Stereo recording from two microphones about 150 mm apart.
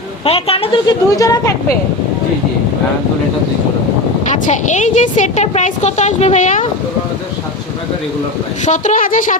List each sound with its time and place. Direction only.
0.3 s speech: 40° left (ahead or behind); by 1.5 s 25° left (ahead or behind)
4.3 s a woman's voice: 55° left (ahead or behind)
8.6 s a woman's voice: 55° left (ahead or behind)